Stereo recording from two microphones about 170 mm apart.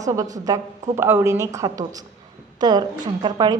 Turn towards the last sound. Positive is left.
turn(degrees=-25)  # may be behind; listen again after turning